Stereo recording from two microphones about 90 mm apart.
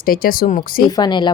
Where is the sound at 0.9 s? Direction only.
50° left (ahead or behind).